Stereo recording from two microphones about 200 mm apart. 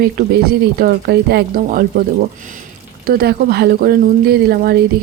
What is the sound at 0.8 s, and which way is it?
Speech, 55° right (ahead or behind).